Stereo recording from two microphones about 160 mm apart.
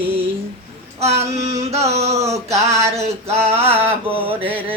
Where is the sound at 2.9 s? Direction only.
40° right (ahead or behind).